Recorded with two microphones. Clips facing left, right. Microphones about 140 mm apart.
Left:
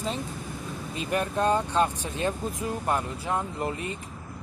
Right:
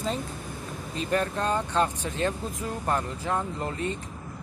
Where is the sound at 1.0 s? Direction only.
15° left (ahead or behind).